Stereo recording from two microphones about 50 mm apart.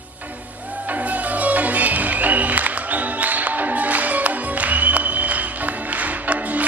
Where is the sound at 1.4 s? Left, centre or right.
Right.